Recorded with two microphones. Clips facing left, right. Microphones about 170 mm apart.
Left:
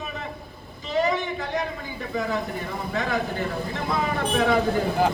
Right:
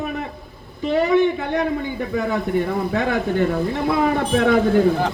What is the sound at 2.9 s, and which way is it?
Speech, 60° right (ahead or behind).